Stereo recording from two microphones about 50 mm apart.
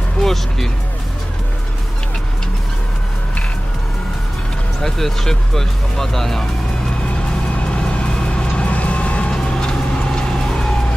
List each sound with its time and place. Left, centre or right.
0.2 s speech: centre
4.8 s speech: centre
7.7 s vehicle: centre
9.3 s vehicle: centre